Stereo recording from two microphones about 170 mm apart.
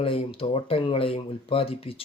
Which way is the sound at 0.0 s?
35° left (ahead or behind).